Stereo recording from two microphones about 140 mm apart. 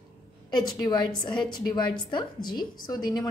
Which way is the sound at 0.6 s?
30° left (ahead or behind).